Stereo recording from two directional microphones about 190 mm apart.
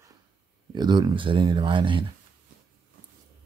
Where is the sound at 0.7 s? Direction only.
20° right (ahead or behind).